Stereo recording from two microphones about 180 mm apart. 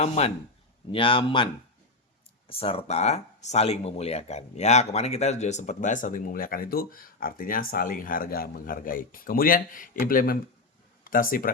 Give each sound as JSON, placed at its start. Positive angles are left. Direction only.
{"t": 0.0, "sound": "a man's voice", "side_deg": 35}
{"t": 2.5, "sound": "speech", "side_deg": 30}